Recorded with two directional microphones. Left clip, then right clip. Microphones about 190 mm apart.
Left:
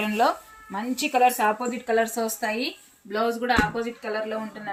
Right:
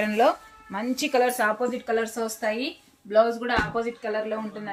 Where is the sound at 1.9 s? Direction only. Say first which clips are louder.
Left 3 dB; 20° right (ahead or behind).